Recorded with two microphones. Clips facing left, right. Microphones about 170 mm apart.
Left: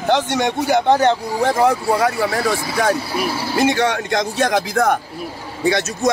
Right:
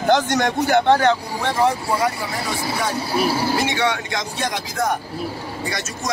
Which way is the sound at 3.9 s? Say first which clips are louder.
Left 7 dB; 60° left (ahead or behind).